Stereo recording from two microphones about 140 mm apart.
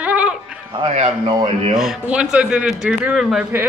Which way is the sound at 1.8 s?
5° right (ahead or behind).